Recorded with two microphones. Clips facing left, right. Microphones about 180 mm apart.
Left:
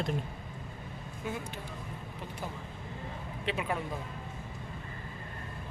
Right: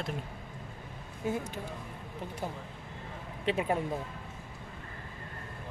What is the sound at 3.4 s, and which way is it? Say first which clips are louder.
Speech: right 4 dB; 35° right (ahead or behind).